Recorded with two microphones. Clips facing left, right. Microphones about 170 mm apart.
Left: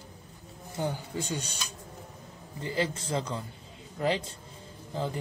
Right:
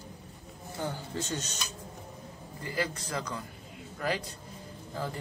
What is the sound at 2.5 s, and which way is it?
A man's voice, 25° left (ahead or behind).